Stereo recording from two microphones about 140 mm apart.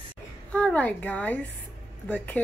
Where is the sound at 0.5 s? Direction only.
10° left (ahead or behind).